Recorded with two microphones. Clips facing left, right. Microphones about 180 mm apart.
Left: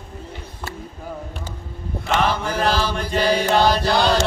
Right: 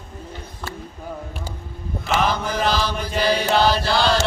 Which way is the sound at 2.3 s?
10° left (ahead or behind).